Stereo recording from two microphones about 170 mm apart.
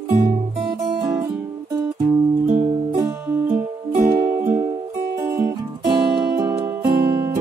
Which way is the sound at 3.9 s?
50° right (ahead or behind).